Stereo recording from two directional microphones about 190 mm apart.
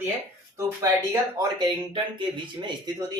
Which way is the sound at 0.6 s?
15° right (ahead or behind).